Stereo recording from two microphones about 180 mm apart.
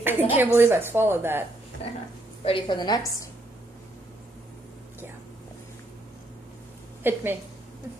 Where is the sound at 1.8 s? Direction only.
35° left (ahead or behind).